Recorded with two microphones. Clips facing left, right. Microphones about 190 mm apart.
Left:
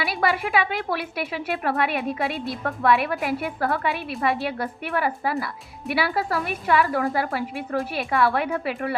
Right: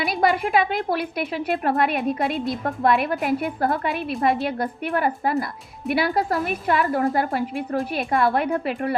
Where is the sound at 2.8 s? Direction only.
40° right (ahead or behind).